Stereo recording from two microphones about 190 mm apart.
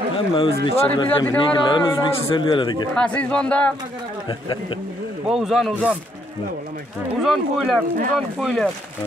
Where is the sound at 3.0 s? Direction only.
5° left (ahead or behind).